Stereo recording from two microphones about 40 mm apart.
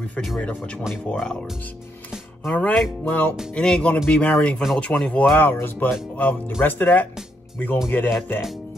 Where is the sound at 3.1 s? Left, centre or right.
Left.